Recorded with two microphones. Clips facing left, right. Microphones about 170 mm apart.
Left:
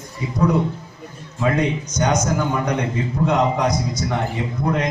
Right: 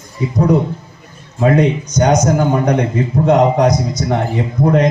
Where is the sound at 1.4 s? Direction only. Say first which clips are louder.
Right 7 dB; 40° right (ahead or behind).